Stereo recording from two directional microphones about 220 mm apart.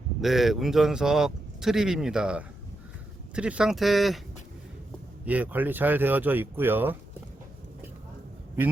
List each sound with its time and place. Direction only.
0.2 s a man's voice: centre (ahead or behind)
5.2 s speech: 5° right (ahead or behind)